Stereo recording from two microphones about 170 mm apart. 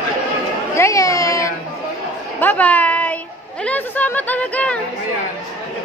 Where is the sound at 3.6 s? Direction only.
10° left (ahead or behind).